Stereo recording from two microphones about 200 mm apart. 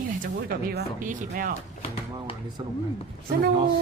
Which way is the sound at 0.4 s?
50° right (ahead or behind).